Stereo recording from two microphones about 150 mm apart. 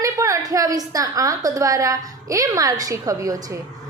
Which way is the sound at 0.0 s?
20° right (ahead or behind).